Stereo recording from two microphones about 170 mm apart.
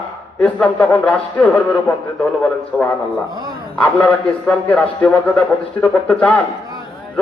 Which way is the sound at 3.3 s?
25° right (ahead or behind).